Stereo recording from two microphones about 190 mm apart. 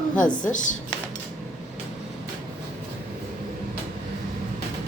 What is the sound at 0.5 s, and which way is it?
Speech, 40° left (ahead or behind).